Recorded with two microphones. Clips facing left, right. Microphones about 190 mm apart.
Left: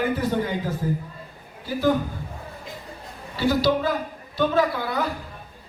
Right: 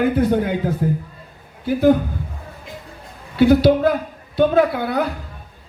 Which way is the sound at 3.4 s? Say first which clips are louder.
Right 8 dB; 60° right (ahead or behind).